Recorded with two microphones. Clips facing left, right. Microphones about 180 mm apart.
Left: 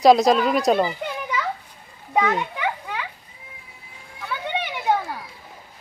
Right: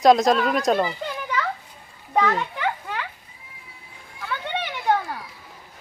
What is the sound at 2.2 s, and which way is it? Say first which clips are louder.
Children playing: even; 10° left (ahead or behind).